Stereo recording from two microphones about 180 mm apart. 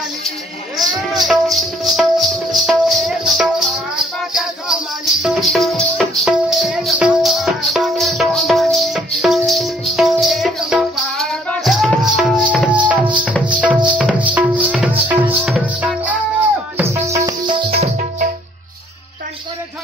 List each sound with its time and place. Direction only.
1.2 s music: centre (ahead or behind); by 17.6 s 20° right (ahead or behind)